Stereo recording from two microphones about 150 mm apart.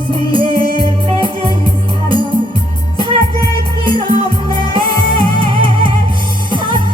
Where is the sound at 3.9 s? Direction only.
35° right (ahead or behind).